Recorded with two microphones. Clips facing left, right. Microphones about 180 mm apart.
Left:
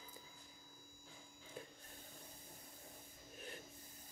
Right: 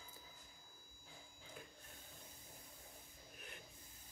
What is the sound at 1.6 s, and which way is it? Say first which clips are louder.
Printer: left 5 dB; 30° left (ahead or behind).